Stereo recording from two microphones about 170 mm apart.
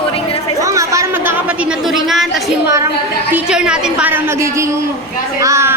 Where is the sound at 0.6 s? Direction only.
20° right (ahead or behind).